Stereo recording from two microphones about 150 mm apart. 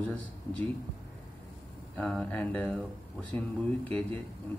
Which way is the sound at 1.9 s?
5° left (ahead or behind).